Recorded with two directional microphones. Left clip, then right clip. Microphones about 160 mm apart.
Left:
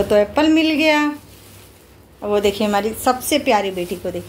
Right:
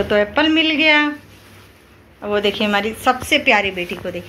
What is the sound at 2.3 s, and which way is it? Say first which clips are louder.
A woman's voice: even; 25° left (ahead or behind).